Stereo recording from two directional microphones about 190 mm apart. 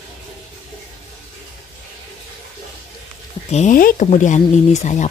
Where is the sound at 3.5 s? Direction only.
40° left (ahead or behind).